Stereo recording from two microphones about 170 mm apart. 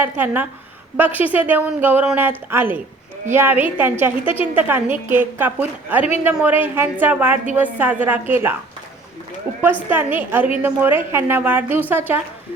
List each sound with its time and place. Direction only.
0.0 s a woman's voice: 10° right (ahead or behind)
9.9 s a woman's voice: 10° right (ahead or behind)